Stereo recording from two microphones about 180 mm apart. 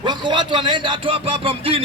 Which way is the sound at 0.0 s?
25° right (ahead or behind).